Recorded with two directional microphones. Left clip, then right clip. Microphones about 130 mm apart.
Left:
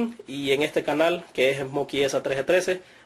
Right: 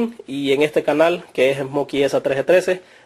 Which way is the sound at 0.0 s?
20° right (ahead or behind).